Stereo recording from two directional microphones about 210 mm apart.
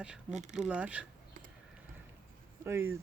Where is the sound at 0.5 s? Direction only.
5° right (ahead or behind).